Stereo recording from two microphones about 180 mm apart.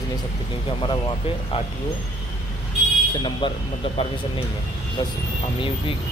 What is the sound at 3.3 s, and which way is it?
Speech, 25° left (ahead or behind).